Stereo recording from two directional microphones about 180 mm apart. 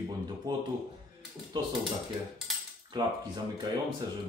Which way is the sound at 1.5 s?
25° right (ahead or behind).